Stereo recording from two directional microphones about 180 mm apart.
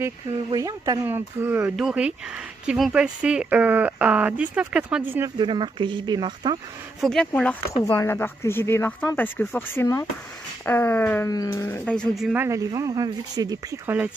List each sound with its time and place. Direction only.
0.5 s speech: 20° right (ahead or behind)
5.4 s speech: 25° right (ahead or behind)
7.0 s speech: 5° left (ahead or behind)
7.8 s speech: 15° left (ahead or behind)
12.4 s speech: 15° right (ahead or behind)